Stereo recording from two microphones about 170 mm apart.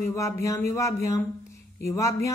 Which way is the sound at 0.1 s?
20° left (ahead or behind).